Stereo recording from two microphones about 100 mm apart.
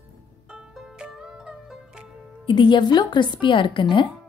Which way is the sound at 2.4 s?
50° left (ahead or behind).